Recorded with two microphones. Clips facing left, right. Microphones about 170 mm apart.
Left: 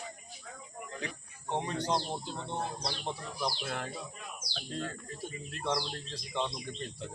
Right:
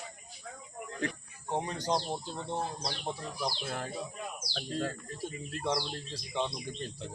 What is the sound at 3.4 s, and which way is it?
Speech, 5° right (ahead or behind).